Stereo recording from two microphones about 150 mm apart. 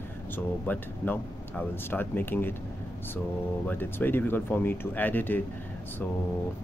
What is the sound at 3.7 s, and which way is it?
Speech, 15° left (ahead or behind).